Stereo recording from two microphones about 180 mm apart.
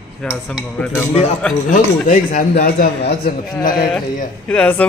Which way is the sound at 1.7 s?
45° left (ahead or behind).